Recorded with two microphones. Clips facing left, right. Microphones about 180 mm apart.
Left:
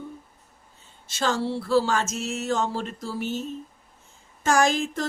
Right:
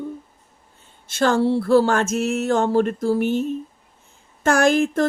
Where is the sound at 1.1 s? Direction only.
55° right (ahead or behind).